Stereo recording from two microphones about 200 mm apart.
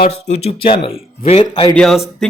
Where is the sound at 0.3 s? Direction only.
25° left (ahead or behind).